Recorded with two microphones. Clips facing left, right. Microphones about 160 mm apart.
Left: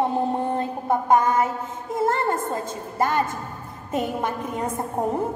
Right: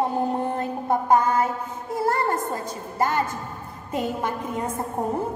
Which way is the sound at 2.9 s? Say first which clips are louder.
Left 1 dB; 20° left (ahead or behind).